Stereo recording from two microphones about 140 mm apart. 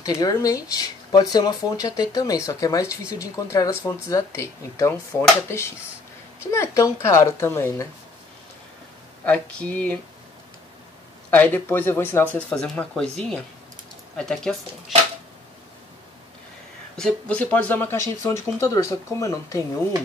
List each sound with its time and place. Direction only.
0.0 s speech: 25° left (ahead or behind)
6.5 s speech: 20° left (ahead or behind)
9.2 s speech: 10° left (ahead or behind)
11.2 s speech: 10° left (ahead or behind)
16.9 s speech: 5° left (ahead or behind); by 19.6 s 20° left (ahead or behind)